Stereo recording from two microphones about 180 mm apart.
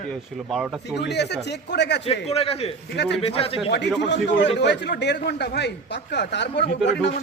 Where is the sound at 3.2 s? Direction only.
30° left (ahead or behind).